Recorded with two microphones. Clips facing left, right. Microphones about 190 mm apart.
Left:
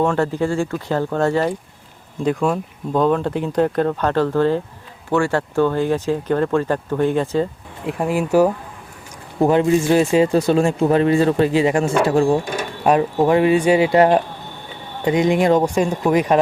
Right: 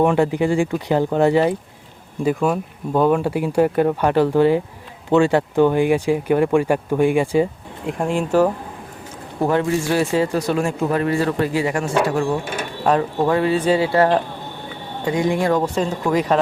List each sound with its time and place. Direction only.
0.0 s speech: 15° right (ahead or behind)
7.9 s speech: 5° left (ahead or behind)
9.4 s speech: 20° left (ahead or behind)
12.8 s speech: 15° left (ahead or behind)